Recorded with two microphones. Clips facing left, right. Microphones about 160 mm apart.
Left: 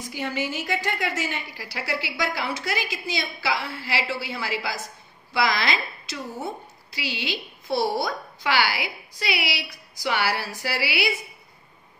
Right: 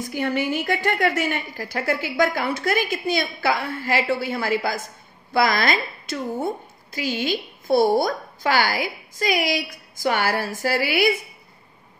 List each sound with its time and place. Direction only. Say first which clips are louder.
0.1 s a woman's voice: right 5 dB; 55° right (ahead or behind)